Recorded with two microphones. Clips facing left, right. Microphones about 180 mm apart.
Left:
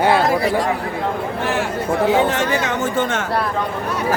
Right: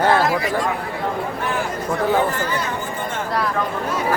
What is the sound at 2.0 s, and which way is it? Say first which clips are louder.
Speech: left 3 dB; 80° left.